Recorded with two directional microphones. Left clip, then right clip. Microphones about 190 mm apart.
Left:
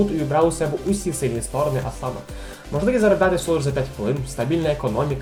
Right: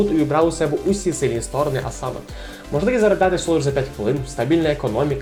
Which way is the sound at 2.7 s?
10° right (ahead or behind).